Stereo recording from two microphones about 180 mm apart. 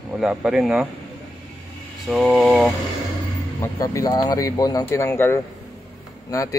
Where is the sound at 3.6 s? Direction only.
20° left (ahead or behind).